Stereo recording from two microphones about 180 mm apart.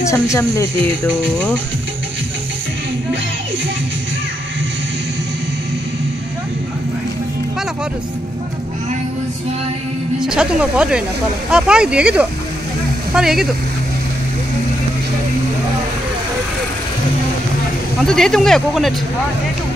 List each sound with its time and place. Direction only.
0.0 s speech: 15° left (ahead or behind)
10.2 s speech: 5° right (ahead or behind)
18.0 s speech: 5° left (ahead or behind)